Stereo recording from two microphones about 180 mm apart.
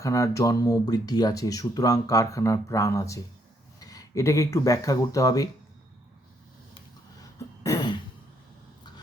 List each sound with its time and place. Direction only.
0.0 s speech: 20° left (ahead or behind)
6.7 s throat clearing: 20° left (ahead or behind)